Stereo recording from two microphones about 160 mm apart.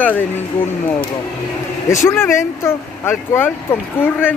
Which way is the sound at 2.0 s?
15° left (ahead or behind).